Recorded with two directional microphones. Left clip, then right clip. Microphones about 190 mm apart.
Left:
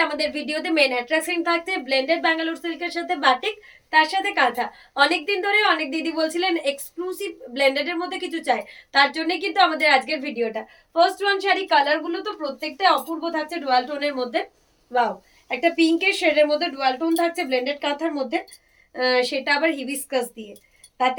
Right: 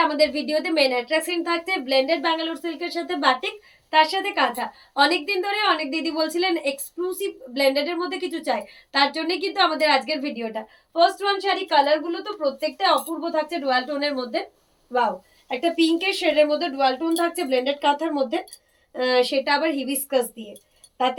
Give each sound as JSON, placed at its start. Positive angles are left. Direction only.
{"t": 0.2, "sound": "a woman's voice", "side_deg": 20}
{"t": 15.4, "sound": "a woman's voice", "side_deg": 15}